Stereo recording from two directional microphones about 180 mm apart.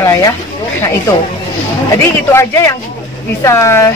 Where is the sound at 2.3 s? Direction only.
15° left (ahead or behind).